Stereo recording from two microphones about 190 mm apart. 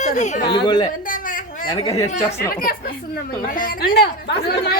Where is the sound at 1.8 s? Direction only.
15° left (ahead or behind).